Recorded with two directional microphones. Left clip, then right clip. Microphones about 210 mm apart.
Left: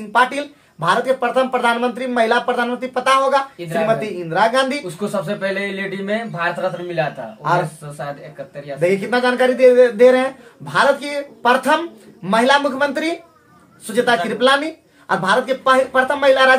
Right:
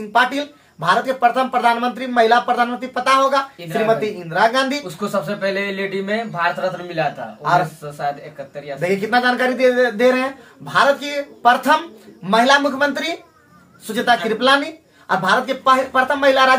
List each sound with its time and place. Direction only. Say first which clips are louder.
0.1 s speech: left 1 dB; 15° left (ahead or behind)
5.4 s speech: right 1 dB; centre (ahead or behind)
8.8 s speech: even; 20° left (ahead or behind)